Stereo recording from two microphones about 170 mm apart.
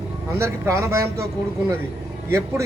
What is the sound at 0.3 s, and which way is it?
Speech, 15° right (ahead or behind).